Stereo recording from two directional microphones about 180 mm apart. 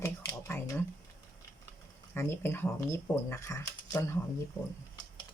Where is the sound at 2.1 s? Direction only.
10° left (ahead or behind).